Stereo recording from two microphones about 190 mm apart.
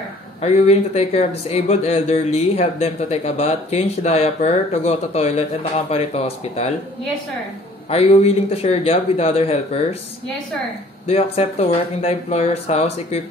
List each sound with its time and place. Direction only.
0.4 s speech: 35° left (ahead or behind)
7.9 s speech: 30° left (ahead or behind)
11.1 s speech: 30° left (ahead or behind)